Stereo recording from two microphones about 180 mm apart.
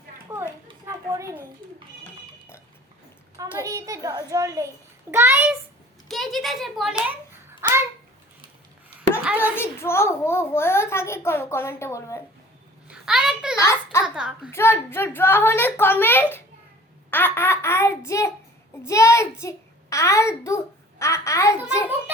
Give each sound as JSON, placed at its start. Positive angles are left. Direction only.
{"t": 0.3, "sound": "children playing", "side_deg": -15}
{"t": 0.7, "sound": "a sound", "side_deg": -20}
{"t": 3.3, "sound": "a child's voice", "side_deg": -20}
{"t": 6.1, "sound": "speech", "side_deg": 0}
{"t": 7.6, "sound": "a sound", "side_deg": -15}
{"t": 9.4, "sound": "a child's voice", "side_deg": 15}
{"t": 12.9, "sound": "a child's voice", "side_deg": 0}
{"t": 13.6, "sound": "a child's voice", "side_deg": 15}
{"t": 14.0, "sound": "a child's voice", "side_deg": -5}
{"t": 14.5, "sound": "a child's voice", "side_deg": 15}